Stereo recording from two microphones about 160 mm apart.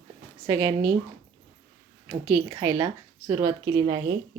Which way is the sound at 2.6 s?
25° right (ahead or behind).